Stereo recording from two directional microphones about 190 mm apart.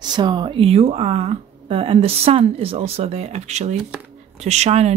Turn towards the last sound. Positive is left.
turn(degrees=-35)  # may be behind; listen again after turning